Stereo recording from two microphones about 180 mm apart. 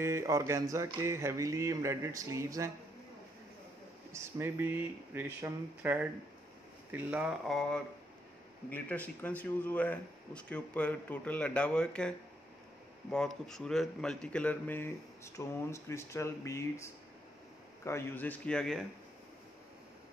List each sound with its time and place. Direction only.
0.0 s mantra: 15° right (ahead or behind)
4.1 s mantra: 15° right (ahead or behind)
7.4 s speech: centre (ahead or behind)
13.1 s speech: 5° left (ahead or behind)